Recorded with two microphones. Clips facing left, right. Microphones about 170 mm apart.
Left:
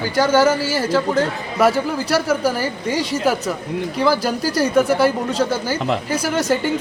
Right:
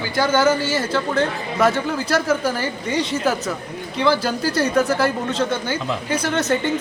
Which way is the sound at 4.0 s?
10° left (ahead or behind).